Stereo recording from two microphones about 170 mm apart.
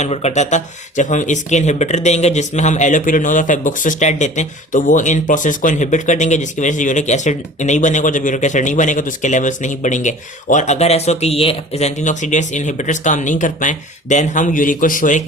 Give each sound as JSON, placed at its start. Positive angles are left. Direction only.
{"t": 0.0, "sound": "speech", "side_deg": 40}